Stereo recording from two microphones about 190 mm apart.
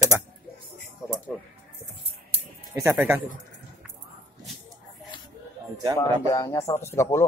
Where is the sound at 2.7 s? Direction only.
10° right (ahead or behind).